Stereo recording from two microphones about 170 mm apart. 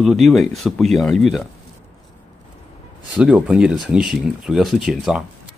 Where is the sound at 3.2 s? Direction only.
5° right (ahead or behind).